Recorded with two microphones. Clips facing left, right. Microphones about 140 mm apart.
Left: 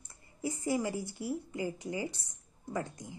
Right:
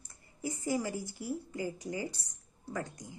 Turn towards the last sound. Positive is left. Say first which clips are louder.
# left 2 dB
turn(degrees=25)  # may be behind; listen again after turning